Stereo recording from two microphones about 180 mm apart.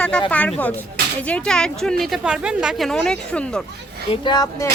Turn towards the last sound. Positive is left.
turn(degrees=25)  # may be behind; listen again after turning